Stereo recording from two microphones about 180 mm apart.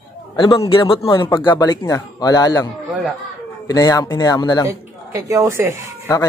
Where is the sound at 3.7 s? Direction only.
20° left (ahead or behind).